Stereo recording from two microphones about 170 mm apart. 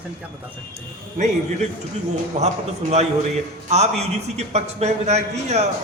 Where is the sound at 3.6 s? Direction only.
40° right (ahead or behind).